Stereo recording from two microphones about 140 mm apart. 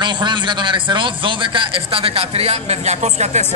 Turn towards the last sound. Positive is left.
turn(degrees=-55)  # may be behind; listen again after turning